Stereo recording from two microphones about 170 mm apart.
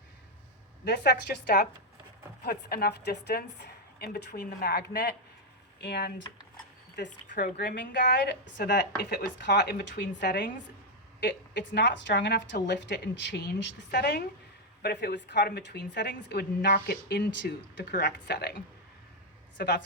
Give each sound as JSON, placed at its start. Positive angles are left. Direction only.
{"t": 0.9, "sound": "a woman's voice", "side_deg": 70}
{"t": 8.5, "sound": "a woman's voice", "side_deg": 70}
{"t": 9.4, "sound": "a woman's voice", "side_deg": 90}
{"t": 19.5, "sound": "a woman's voice", "side_deg": 80}